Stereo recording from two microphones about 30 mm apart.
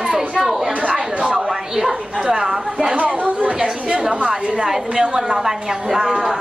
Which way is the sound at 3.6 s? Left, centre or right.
Right.